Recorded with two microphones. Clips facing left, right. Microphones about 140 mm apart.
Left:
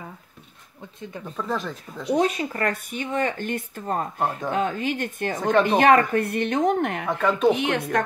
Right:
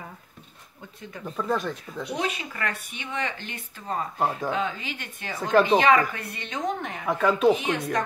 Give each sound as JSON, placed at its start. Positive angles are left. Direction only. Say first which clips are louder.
{"t": 1.2, "sound": "speech", "louder": "right 2 dB", "side_deg": 0}
{"t": 2.1, "sound": "speech", "louder": "left 9 dB", "side_deg": 45}
{"t": 5.4, "sound": "speech", "louder": "even", "side_deg": 0}
{"t": 5.8, "sound": "a woman's voice", "louder": "left 4 dB", "side_deg": 55}
{"t": 7.1, "sound": "speech", "louder": "right 1 dB", "side_deg": 0}
{"t": 7.5, "sound": "a woman's voice", "louder": "left 3 dB", "side_deg": 65}